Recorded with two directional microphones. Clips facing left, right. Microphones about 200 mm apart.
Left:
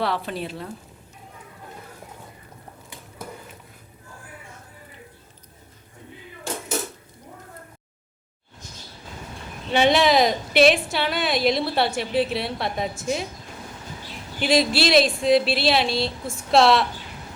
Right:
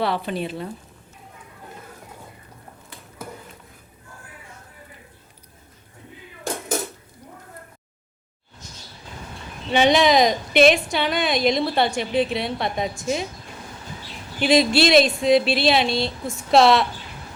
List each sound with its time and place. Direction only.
0.0 s a woman's voice: centre (ahead or behind)
9.7 s a woman's voice: 5° left (ahead or behind)
14.4 s a woman's voice: centre (ahead or behind)